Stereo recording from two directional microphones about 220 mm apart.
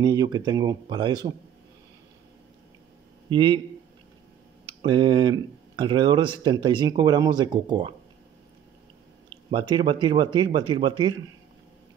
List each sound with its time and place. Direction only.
0.0 s speech: 20° right (ahead or behind)
3.3 s speech: 20° right (ahead or behind)
4.8 s speech: 20° right (ahead or behind)
9.5 s speech: 20° right (ahead or behind)